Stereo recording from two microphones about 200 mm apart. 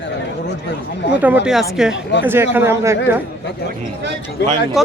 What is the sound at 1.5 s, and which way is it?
Speech, centre (ahead or behind).